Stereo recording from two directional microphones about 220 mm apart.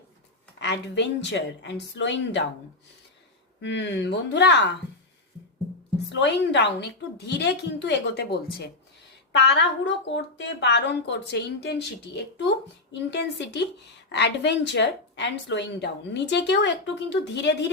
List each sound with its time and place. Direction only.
0.6 s a woman's voice: 50° left (ahead or behind)
3.6 s a woman's voice: 55° left (ahead or behind)
6.1 s a woman's voice: 55° left (ahead or behind)